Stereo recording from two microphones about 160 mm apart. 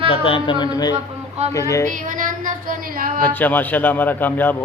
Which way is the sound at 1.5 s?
20° left (ahead or behind).